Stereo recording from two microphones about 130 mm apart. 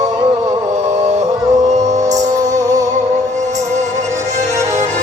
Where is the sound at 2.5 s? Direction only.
25° right (ahead or behind).